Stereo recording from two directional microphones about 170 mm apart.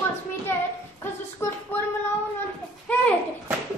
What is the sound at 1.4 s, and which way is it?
Speech, 15° left (ahead or behind).